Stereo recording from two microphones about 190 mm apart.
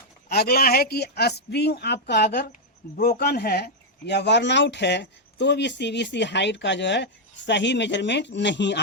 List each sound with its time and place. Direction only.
0.3 s speech: 55° left (ahead or behind)
2.3 s speech: 45° left (ahead or behind); by 8.8 s 65° left (ahead or behind)